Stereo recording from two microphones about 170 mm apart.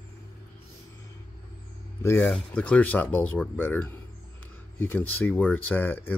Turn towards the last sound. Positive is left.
turn(degrees=10)  # may be behind; listen again after turning